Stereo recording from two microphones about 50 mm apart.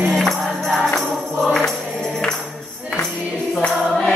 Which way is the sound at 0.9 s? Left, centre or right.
Left.